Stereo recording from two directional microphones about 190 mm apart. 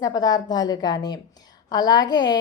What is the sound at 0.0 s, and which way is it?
A woman's voice, 20° left (ahead or behind).